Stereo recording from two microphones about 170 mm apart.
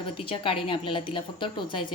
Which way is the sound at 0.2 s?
30° left (ahead or behind).